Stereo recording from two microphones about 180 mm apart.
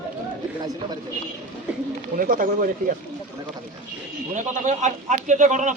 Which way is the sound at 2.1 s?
50° right (ahead or behind).